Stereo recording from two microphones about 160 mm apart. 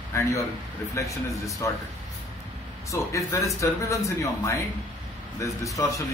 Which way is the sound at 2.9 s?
20° left (ahead or behind).